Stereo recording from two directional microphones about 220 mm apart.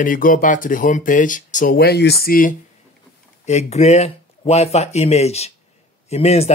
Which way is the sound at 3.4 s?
30° left (ahead or behind).